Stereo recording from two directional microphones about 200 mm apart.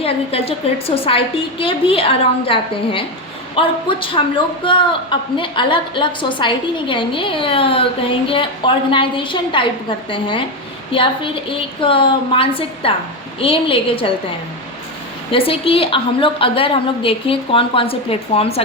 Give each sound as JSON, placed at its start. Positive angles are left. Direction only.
{"t": 0.0, "sound": "a woman's voice", "side_deg": 30}
{"t": 15.3, "sound": "a woman's voice", "side_deg": 25}